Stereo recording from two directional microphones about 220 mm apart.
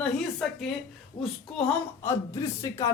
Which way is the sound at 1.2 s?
30° left (ahead or behind).